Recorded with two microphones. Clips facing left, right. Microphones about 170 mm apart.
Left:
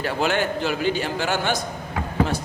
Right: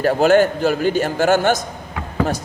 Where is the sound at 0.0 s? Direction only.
45° right (ahead or behind).